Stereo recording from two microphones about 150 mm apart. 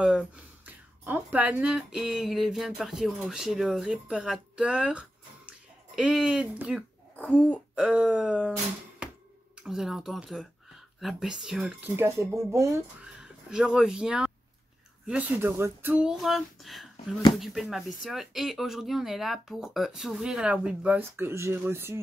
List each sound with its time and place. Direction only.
0.7 s speech: 10° right (ahead or behind)
5.5 s a sound: 5° right (ahead or behind)
7.2 s throat clearing: 10° left (ahead or behind)
7.7 s speech: 5° right (ahead or behind)
9.6 s speech: 5° right (ahead or behind)
12.0 s speech: 20° right (ahead or behind)
13.0 s speech: 5° right (ahead or behind)